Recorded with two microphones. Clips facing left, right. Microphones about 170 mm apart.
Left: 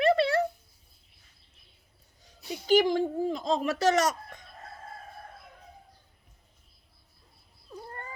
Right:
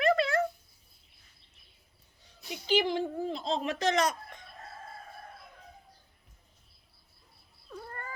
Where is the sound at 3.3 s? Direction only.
45° left (ahead or behind).